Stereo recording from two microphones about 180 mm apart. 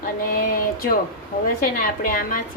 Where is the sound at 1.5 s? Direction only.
50° left (ahead or behind).